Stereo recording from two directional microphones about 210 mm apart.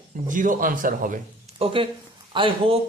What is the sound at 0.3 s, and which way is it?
Speech, 40° right (ahead or behind).